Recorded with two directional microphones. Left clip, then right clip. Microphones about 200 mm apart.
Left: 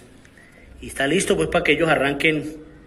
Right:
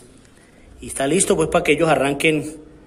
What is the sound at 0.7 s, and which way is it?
A man's voice, 15° right (ahead or behind).